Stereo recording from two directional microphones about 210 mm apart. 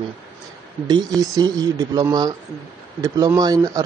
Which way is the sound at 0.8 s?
20° right (ahead or behind).